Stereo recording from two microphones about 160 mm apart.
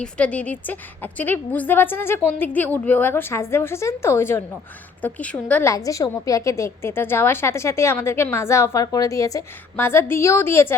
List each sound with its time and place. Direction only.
0.0 s a woman's voice: 5° left (ahead or behind)